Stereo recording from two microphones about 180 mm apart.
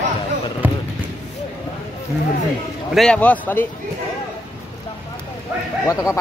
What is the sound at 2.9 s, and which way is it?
Speech, 5° left (ahead or behind).